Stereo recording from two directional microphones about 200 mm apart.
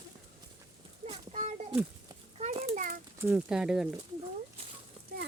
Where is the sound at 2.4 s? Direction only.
35° right (ahead or behind).